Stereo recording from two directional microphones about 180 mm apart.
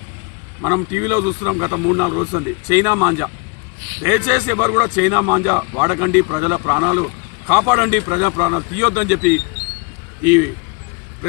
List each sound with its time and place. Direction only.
0.6 s a man's voice: 20° right (ahead or behind)